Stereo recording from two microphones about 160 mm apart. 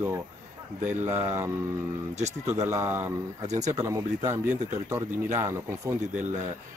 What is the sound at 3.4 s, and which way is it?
Speech, 45° right (ahead or behind).